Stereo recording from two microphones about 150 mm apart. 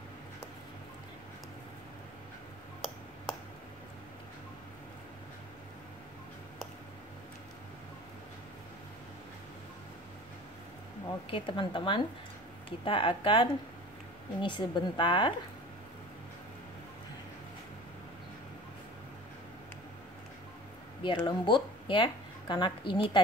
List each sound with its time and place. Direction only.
11.1 s speech: 35° left (ahead or behind)
21.0 s speech: 30° left (ahead or behind)